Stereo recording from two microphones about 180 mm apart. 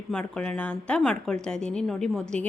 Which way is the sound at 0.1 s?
5° left (ahead or behind).